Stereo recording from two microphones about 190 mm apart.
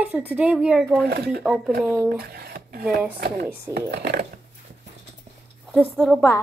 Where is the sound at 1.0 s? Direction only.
60° right (ahead or behind).